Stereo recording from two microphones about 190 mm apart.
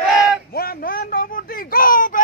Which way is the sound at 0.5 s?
50° left (ahead or behind).